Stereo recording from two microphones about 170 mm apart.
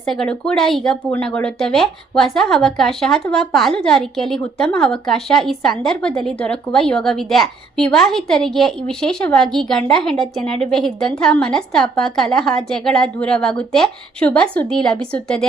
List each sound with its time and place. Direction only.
0.0 s a woman's voice: 5° left (ahead or behind)